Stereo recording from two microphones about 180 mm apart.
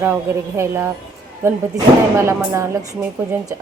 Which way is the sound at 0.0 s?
10° right (ahead or behind).